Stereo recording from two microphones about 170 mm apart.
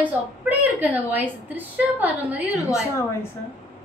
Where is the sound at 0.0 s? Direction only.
10° right (ahead or behind).